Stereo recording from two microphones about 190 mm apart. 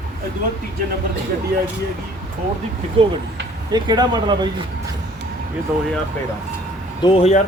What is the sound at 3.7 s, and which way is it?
Speech, 20° right (ahead or behind).